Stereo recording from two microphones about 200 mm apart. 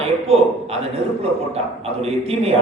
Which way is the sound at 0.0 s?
30° right (ahead or behind).